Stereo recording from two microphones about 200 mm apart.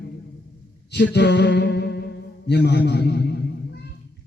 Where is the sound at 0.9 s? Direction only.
60° left (ahead or behind).